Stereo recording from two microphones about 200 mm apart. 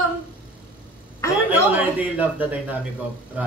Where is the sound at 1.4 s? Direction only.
10° right (ahead or behind).